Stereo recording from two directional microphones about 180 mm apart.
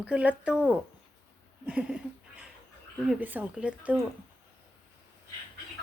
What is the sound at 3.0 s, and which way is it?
Female singing, 5° right (ahead or behind).